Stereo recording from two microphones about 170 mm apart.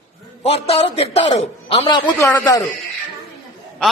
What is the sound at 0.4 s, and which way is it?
A man's voice, 35° left (ahead or behind).